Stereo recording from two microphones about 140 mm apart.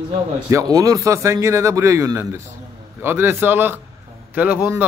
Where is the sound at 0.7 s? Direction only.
25° right (ahead or behind).